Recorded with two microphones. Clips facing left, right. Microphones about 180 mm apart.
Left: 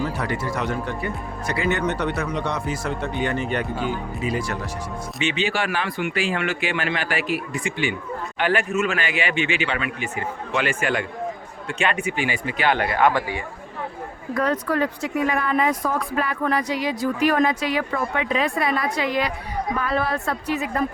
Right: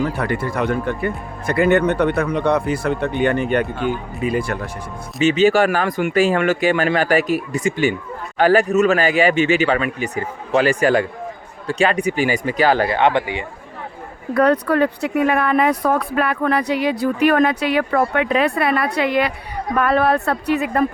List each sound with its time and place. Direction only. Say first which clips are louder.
0.0 s speech: right 5 dB; 55° right (ahead or behind)
5.2 s speech: right 11 dB; 40° right (ahead or behind); by 13.4 s 20° right (ahead or behind)
14.3 s speech: right 7 dB; 65° right (ahead or behind)